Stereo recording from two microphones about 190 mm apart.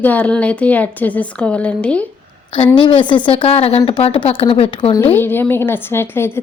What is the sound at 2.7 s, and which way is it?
Speech, 25° left (ahead or behind).